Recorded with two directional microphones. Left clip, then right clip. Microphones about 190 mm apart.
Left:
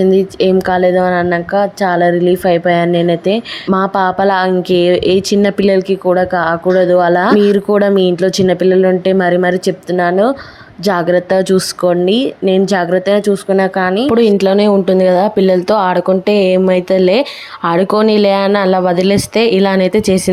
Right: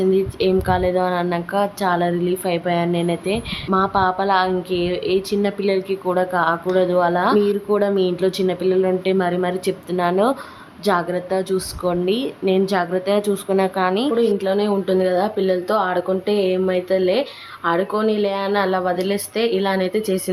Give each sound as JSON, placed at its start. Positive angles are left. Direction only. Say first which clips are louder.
{"t": 0.1, "sound": "a woman's voice", "louder": "left 7 dB", "side_deg": 35}
{"t": 10.8, "sound": "a woman's voice", "louder": "left 8 dB", "side_deg": 35}
{"t": 14.3, "sound": "a woman's voice", "louder": "left 9 dB", "side_deg": 40}